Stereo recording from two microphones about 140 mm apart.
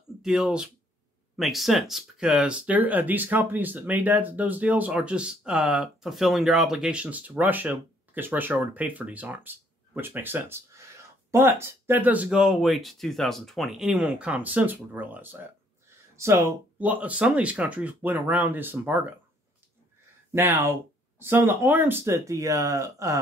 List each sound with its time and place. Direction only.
0.2 s speech: 5° right (ahead or behind)
20.3 s speech: 20° right (ahead or behind)